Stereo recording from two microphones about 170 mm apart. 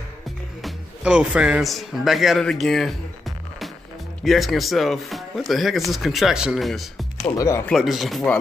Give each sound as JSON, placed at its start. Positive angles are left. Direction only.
{"t": 0.6, "sound": "speech", "side_deg": -5}
{"t": 7.3, "sound": "speech", "side_deg": 15}
{"t": 7.7, "sound": "speech", "side_deg": 0}